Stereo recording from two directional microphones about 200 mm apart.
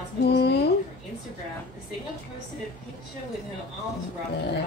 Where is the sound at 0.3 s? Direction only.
55° left (ahead or behind).